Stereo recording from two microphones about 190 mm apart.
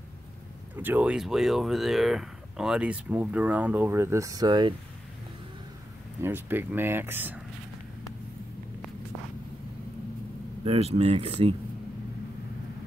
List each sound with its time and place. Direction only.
0.7 s speech: 10° right (ahead or behind); by 4.7 s 25° right (ahead or behind)
6.2 s speech: 10° right (ahead or behind)
10.6 s speech: 30° right (ahead or behind)